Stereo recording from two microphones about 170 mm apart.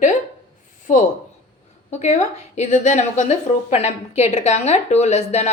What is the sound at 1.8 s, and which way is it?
A woman's voice, 40° left (ahead or behind).